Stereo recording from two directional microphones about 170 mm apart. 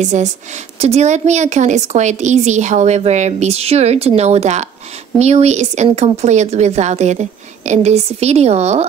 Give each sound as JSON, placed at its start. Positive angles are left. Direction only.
{"t": 0.0, "sound": "a woman's voice", "side_deg": -45}